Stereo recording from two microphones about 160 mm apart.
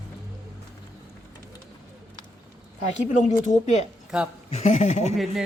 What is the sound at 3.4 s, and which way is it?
Speech, 50° left (ahead or behind).